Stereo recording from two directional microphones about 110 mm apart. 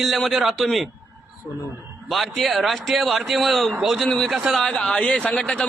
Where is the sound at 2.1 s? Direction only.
Centre (ahead or behind).